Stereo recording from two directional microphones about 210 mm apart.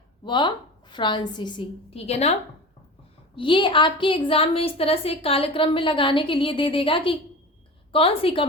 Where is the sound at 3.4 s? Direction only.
25° left (ahead or behind).